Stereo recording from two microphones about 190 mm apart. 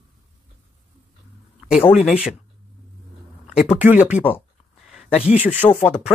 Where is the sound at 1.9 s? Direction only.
5° right (ahead or behind).